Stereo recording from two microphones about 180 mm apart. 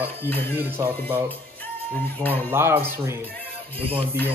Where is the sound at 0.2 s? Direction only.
10° left (ahead or behind).